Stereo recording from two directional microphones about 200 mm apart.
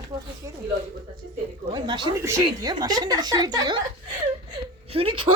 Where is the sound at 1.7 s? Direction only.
25° right (ahead or behind).